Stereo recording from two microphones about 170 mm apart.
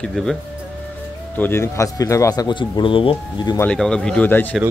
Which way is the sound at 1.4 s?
15° left (ahead or behind).